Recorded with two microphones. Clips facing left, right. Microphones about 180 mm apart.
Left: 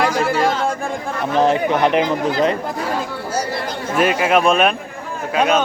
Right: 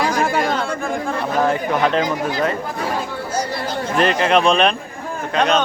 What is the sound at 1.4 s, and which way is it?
Speech, 20° left (ahead or behind).